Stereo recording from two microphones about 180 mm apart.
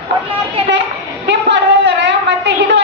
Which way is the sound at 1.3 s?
75° right (ahead or behind).